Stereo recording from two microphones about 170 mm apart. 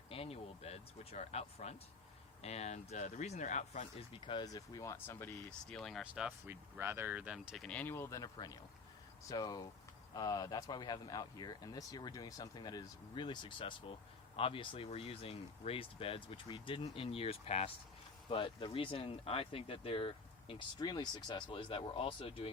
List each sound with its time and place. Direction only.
0.1 s speech: 35° left (ahead or behind)
4.1 s a man's voice: 30° left (ahead or behind); by 5.5 s 15° left (ahead or behind)
5.7 s a man's voice: centre (ahead or behind); by 22.4 s 30° left (ahead or behind)